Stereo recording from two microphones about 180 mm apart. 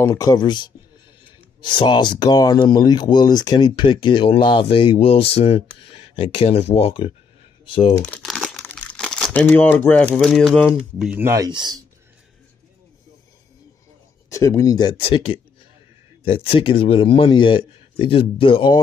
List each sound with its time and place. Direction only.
0.0 s speech: 20° left (ahead or behind)
1.7 s speech: 25° left (ahead or behind)
8.0 s speech: 5° left (ahead or behind)
11.0 s speech: 10° right (ahead or behind)
14.3 s speech: 15° left (ahead or behind)